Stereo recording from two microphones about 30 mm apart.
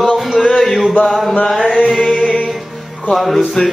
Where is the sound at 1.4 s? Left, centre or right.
Centre.